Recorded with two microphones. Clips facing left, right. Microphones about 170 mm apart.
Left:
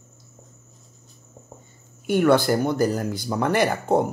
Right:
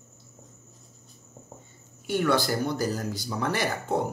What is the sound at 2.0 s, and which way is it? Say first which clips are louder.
Speech: left 7 dB; 55° left (ahead or behind).